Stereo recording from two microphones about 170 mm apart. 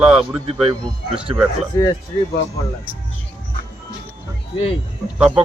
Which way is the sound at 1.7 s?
20° left (ahead or behind).